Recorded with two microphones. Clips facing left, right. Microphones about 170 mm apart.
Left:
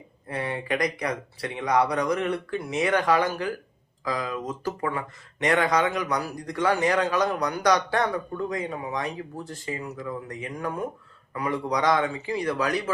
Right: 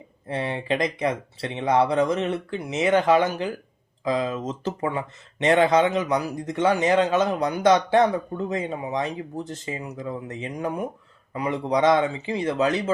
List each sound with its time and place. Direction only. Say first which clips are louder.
0.3 s speech: right 3 dB; 25° right (ahead or behind)